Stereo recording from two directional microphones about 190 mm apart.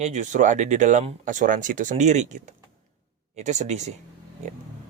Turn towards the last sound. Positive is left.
turn(degrees=-35)  # may be behind; listen again after turning